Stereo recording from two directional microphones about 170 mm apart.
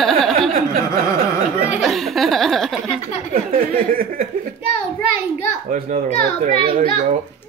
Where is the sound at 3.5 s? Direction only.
60° right (ahead or behind).